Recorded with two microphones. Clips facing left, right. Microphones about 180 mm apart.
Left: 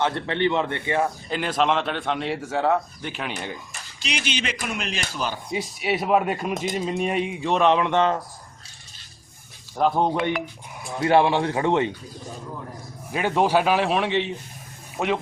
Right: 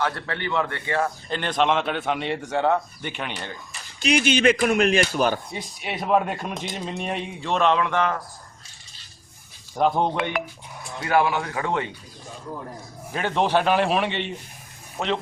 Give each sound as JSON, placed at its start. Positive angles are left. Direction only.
{"t": 0.0, "sound": "a man's voice", "side_deg": 25}
{"t": 1.4, "sound": "a man's voice", "side_deg": 5}
{"t": 4.0, "sound": "speech", "side_deg": -50}
{"t": 5.5, "sound": "a man's voice", "side_deg": 10}
{"t": 9.7, "sound": "a man's voice", "side_deg": 0}
{"t": 11.0, "sound": "a man's voice", "side_deg": 25}
{"t": 13.1, "sound": "a man's voice", "side_deg": 10}